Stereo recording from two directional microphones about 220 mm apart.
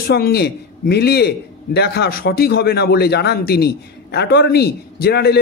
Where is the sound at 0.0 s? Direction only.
45° left (ahead or behind).